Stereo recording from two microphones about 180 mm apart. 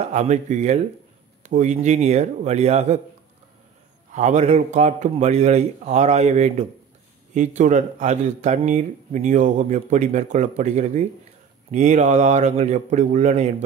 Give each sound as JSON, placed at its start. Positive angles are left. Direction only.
{"t": 0.1, "sound": "speech", "side_deg": -40}
{"t": 4.1, "sound": "speech", "side_deg": -40}